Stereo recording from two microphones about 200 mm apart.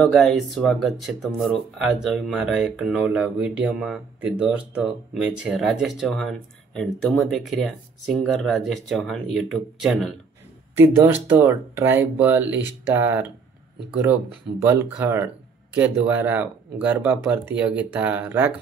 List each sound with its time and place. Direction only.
0.0 s speech: centre (ahead or behind)
10.7 s speech: 10° right (ahead or behind)
14.6 s speech: 10° right (ahead or behind)